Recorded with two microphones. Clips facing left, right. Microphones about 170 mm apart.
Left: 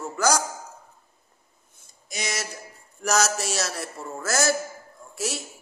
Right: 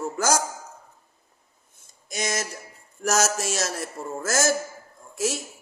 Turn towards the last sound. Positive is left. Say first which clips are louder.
# right 4 dB
turn(degrees=-45)  # may be behind; listen again after turning